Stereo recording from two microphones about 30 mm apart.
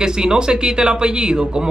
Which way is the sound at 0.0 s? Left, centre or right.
Right.